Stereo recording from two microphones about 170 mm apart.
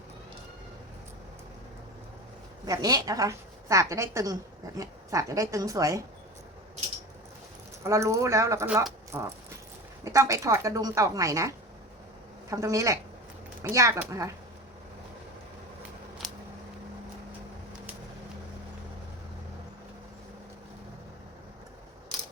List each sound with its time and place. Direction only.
2.6 s a woman's voice: 20° right (ahead or behind)
7.9 s a woman's voice: 15° right (ahead or behind)